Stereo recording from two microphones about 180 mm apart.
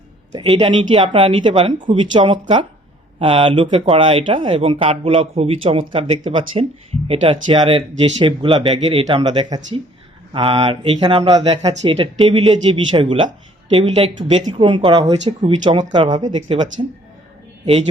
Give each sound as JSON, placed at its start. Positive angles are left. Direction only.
{"t": 0.6, "sound": "speech", "side_deg": -30}
{"t": 14.8, "sound": "speech", "side_deg": -25}
{"t": 15.2, "sound": "speech", "side_deg": -40}